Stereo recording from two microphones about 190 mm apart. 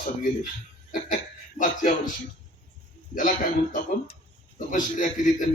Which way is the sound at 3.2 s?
45° left (ahead or behind).